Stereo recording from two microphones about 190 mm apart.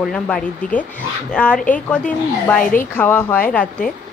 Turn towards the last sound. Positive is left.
turn(degrees=10)  # may be behind; listen again after turning